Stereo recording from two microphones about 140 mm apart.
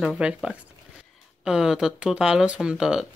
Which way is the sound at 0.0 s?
5° right (ahead or behind).